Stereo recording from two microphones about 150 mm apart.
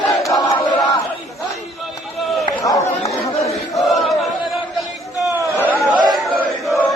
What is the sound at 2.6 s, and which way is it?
Chatter, 20° left (ahead or behind).